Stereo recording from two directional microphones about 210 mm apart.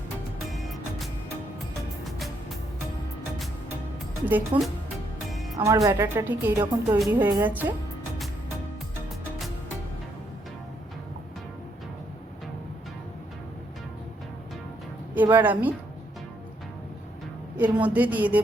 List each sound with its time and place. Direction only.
0.4 s music: centre (ahead or behind)
2.0 s music: centre (ahead or behind)
4.5 s a woman's voice: 25° right (ahead or behind)
5.3 s music: centre (ahead or behind)
5.5 s speech: 15° right (ahead or behind)
15.1 s speech: 10° right (ahead or behind)
17.6 s speech: 5° right (ahead or behind)